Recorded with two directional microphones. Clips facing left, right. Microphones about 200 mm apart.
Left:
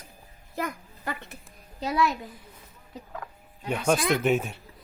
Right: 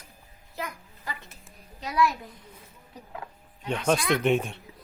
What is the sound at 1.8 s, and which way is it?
Speech, 25° left (ahead or behind).